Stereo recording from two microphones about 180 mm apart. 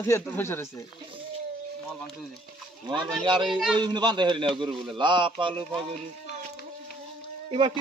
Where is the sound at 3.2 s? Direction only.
25° right (ahead or behind).